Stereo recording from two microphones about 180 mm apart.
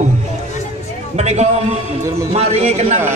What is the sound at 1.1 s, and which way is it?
A man's voice, 40° right (ahead or behind).